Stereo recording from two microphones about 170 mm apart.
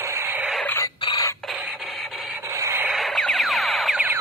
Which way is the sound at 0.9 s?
25° left (ahead or behind).